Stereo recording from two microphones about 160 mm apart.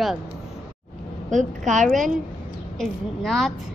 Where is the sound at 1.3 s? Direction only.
50° right (ahead or behind).